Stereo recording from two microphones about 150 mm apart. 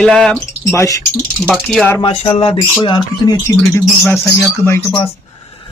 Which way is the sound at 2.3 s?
35° left (ahead or behind).